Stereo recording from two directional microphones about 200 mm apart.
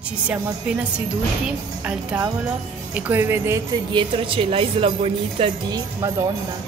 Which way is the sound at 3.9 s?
25° right (ahead or behind).